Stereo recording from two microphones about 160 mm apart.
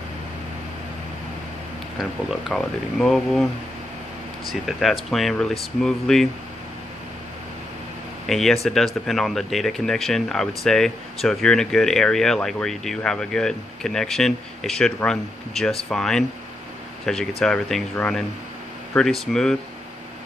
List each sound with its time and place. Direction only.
2.5 s speech: 5° left (ahead or behind)
4.6 s speech: centre (ahead or behind)
8.3 s speech: centre (ahead or behind)